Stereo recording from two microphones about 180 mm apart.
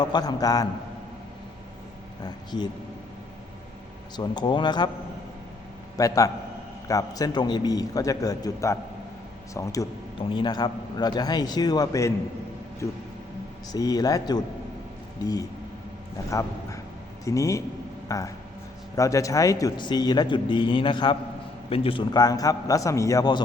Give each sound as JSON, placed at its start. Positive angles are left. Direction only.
{"t": 0.0, "sound": "speech", "side_deg": 25}
{"t": 2.2, "sound": "a man's voice", "side_deg": 25}
{"t": 4.2, "sound": "speech", "side_deg": 25}
{"t": 6.0, "sound": "speech", "side_deg": 20}
{"t": 13.7, "sound": "a man's voice", "side_deg": 20}